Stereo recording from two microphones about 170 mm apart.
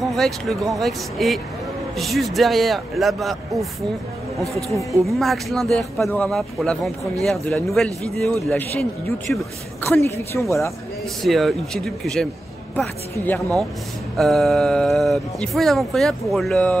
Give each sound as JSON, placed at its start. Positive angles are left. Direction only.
{"t": 0.0, "sound": "speech", "side_deg": 0}
{"t": 5.0, "sound": "a woman's voice", "side_deg": 0}
{"t": 11.2, "sound": "a woman's voice", "side_deg": 0}
{"t": 14.1, "sound": "speech", "side_deg": 0}